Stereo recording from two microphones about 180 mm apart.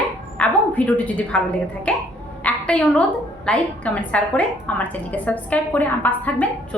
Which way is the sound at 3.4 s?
5° left (ahead or behind).